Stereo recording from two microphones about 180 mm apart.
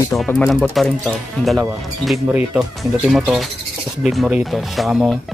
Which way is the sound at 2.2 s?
10° right (ahead or behind).